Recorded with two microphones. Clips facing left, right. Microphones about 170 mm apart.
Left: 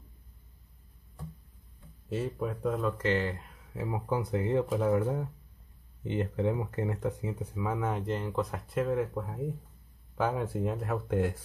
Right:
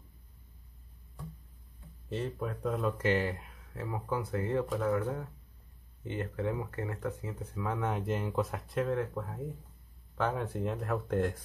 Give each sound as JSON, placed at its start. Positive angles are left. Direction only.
{"t": 2.0, "sound": "speech", "side_deg": 5}
{"t": 3.7, "sound": "speech", "side_deg": 15}